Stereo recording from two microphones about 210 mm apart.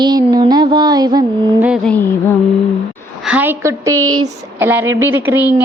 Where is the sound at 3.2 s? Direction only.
10° right (ahead or behind).